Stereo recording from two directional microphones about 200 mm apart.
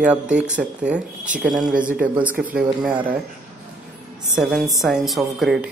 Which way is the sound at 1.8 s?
45° right (ahead or behind).